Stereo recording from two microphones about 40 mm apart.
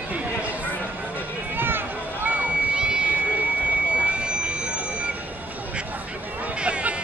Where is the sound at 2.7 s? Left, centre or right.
Right.